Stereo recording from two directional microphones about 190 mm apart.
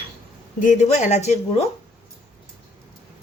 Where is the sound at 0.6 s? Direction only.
40° left (ahead or behind).